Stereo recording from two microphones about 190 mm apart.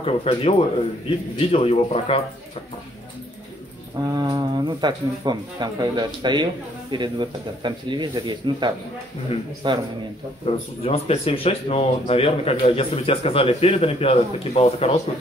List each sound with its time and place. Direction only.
0.0 s speech: 30° left (ahead or behind)
4.1 s speech: 20° right (ahead or behind)
10.4 s speech: 30° left (ahead or behind)